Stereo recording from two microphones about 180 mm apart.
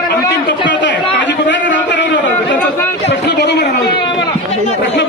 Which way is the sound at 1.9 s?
90° left.